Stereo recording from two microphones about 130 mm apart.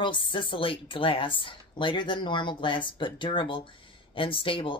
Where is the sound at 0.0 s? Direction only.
40° left (ahead or behind).